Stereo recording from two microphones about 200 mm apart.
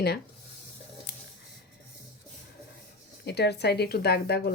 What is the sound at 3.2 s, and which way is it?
Speech, 55° left (ahead or behind).